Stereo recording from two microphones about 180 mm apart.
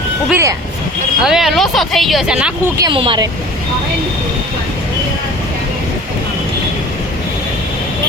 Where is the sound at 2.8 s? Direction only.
30° right (ahead or behind).